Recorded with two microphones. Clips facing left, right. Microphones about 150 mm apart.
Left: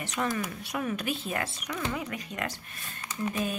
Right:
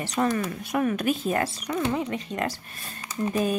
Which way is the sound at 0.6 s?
55° right (ahead or behind).